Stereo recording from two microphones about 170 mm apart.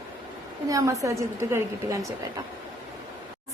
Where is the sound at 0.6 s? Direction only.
20° right (ahead or behind).